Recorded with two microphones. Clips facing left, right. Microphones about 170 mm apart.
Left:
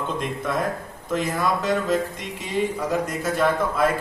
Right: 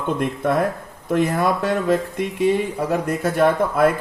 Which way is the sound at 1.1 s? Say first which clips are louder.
Right 5 dB; 60° right (ahead or behind).